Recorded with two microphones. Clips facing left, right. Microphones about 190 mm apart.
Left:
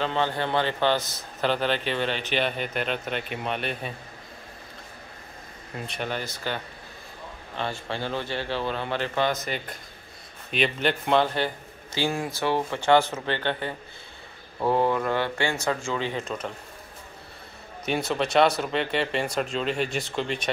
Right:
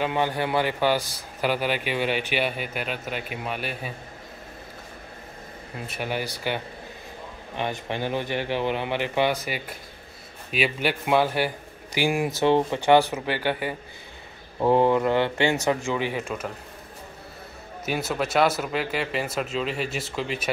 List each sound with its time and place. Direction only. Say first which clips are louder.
0.0 s a man's voice: right 1 dB; 10° right (ahead or behind)
5.9 s a man's voice: right 2 dB; 10° right (ahead or behind)
17.8 s speech: left 1 dB; 5° right (ahead or behind)